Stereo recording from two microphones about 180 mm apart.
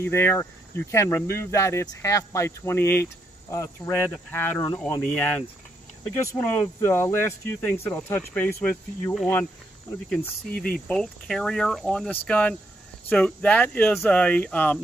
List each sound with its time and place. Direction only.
0.0 s speech: 15° left (ahead or behind)
10.7 s speech: 5° left (ahead or behind)